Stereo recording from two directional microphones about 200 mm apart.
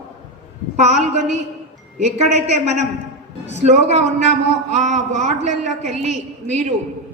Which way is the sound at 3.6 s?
35° right (ahead or behind).